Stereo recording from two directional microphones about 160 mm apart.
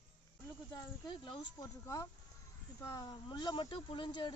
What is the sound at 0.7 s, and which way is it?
Speech, 25° left (ahead or behind).